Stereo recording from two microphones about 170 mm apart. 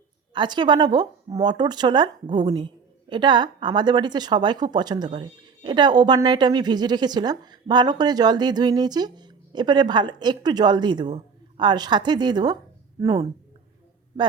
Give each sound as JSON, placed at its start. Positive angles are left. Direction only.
{"t": 0.3, "sound": "speech", "side_deg": -25}